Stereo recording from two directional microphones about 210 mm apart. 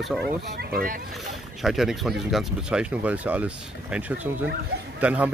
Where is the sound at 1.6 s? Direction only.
Centre (ahead or behind).